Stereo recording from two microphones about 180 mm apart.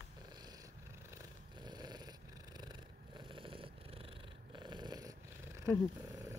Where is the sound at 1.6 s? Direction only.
25° right (ahead or behind).